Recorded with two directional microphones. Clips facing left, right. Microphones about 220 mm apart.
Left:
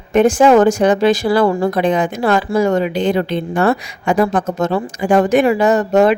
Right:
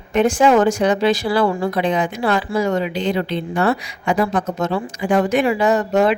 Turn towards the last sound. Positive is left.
turn(degrees=45)  # may be behind; listen again after turning